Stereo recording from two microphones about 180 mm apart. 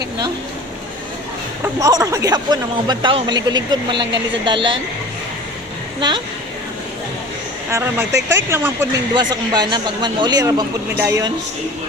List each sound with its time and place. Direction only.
1.6 s speech: 20° right (ahead or behind)
6.0 s speech: 25° right (ahead or behind)
7.7 s speech: 15° right (ahead or behind)
9.1 s speech: 25° right (ahead or behind)
10.9 s speech: 10° right (ahead or behind)